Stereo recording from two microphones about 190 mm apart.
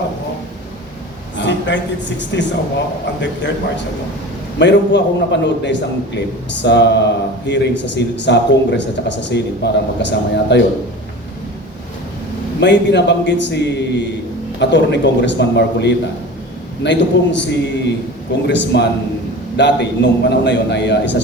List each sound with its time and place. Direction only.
1.4 s a man's voice: 70° left (ahead or behind)
4.6 s a man's voice: 65° left (ahead or behind)
12.5 s a man's voice: 65° left (ahead or behind)